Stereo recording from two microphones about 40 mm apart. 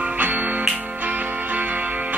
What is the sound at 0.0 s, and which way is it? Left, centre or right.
Music, right.